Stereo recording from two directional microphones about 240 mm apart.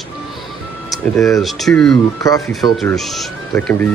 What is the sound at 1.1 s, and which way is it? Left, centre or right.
Speech, centre.